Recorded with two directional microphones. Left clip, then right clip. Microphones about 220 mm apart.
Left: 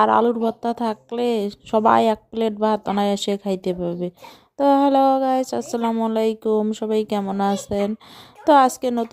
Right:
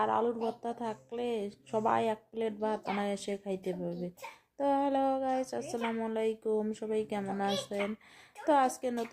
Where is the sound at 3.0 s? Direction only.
40° left (ahead or behind).